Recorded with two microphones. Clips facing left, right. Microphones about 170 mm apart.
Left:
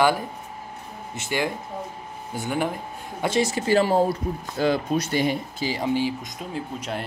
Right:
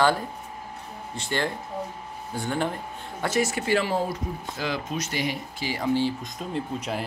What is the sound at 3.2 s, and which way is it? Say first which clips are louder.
Speech: left 3 dB; 25° left (ahead or behind).